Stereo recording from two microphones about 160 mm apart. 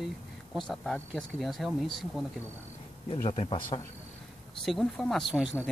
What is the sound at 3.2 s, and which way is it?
Speech, 35° left (ahead or behind).